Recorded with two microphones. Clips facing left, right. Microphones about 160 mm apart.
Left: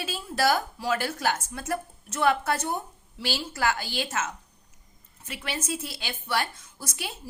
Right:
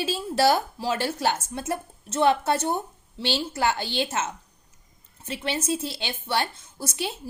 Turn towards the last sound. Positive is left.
turn(degrees=-25)  # may be behind; listen again after turning